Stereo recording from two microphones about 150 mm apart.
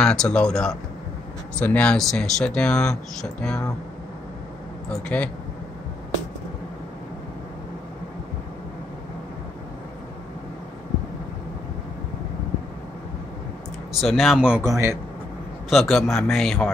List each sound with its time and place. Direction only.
0.0 s speech: 5° left (ahead or behind)
5.0 s speech: 10° left (ahead or behind)
14.0 s speech: centre (ahead or behind)
14.6 s a man's voice: 15° right (ahead or behind)
15.7 s speech: centre (ahead or behind)